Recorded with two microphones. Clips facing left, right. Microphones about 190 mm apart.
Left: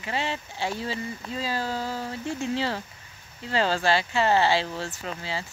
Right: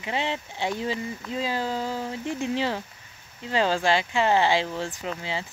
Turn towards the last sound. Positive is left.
turn(degrees=-20)  # may be behind; listen again after turning